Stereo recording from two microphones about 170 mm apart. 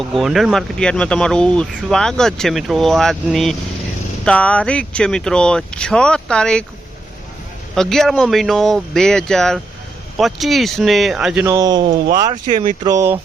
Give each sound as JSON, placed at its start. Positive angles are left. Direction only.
{"t": 0.0, "sound": "speech", "side_deg": 0}
{"t": 7.8, "sound": "speech", "side_deg": 5}
{"t": 11.4, "sound": "speech", "side_deg": -20}